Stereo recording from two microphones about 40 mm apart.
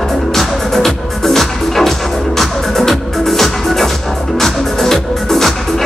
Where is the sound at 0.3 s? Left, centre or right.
Centre.